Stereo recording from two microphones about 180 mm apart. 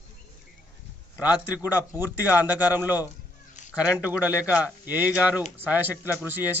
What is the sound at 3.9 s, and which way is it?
A man's voice, 10° right (ahead or behind).